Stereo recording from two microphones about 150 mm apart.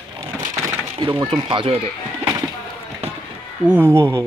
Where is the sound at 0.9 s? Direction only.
35° right (ahead or behind).